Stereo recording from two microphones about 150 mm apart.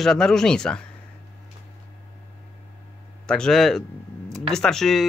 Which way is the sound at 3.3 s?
5° left (ahead or behind).